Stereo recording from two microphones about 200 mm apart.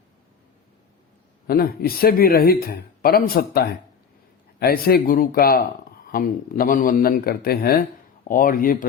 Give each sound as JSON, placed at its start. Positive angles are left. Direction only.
{"t": 1.5, "sound": "speech", "side_deg": 50}
{"t": 4.6, "sound": "speech", "side_deg": 50}